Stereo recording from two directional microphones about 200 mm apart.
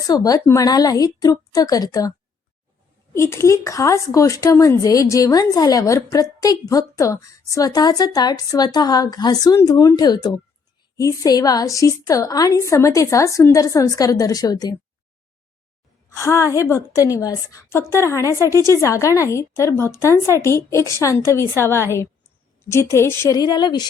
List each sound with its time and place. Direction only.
0.1 s speech: 20° left (ahead or behind)
16.1 s speech: 15° left (ahead or behind)